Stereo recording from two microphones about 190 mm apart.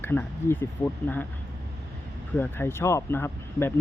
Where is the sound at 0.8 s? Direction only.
25° left (ahead or behind).